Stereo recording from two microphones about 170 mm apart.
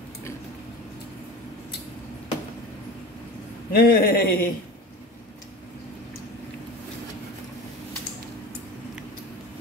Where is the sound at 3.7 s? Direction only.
60° left (ahead or behind).